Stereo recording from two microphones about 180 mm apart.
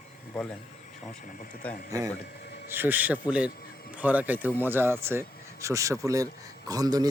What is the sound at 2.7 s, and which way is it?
Speech, 10° right (ahead or behind).